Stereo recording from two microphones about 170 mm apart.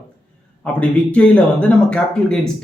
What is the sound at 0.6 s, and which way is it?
Speech, 5° left (ahead or behind).